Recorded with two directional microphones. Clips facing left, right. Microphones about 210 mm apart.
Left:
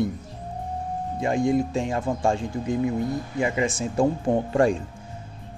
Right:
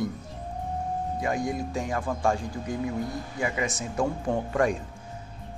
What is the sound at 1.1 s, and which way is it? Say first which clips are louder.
Speech: left 9 dB; 25° left (ahead or behind).